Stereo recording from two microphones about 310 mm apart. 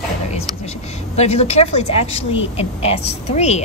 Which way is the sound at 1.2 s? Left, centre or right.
Left.